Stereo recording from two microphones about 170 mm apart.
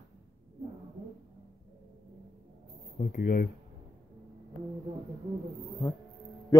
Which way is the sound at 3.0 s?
50° left (ahead or behind).